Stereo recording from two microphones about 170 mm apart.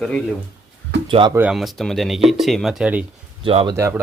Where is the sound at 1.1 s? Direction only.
30° right (ahead or behind).